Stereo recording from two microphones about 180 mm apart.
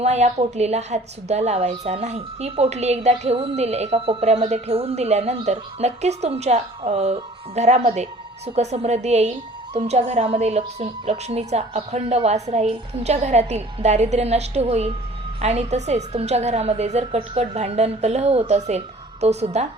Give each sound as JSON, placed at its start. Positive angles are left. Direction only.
{"t": 0.0, "sound": "a woman's voice", "side_deg": -35}